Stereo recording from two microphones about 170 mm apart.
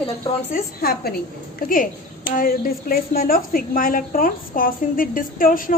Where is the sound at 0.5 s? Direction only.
60° left (ahead or behind).